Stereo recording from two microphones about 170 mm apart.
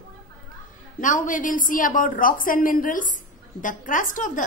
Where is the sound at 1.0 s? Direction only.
50° left (ahead or behind).